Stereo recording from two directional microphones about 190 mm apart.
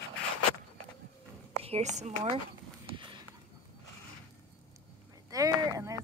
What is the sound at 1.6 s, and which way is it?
Speech, 35° right (ahead or behind).